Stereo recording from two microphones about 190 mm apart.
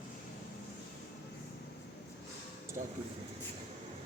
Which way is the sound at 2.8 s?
40° right (ahead or behind).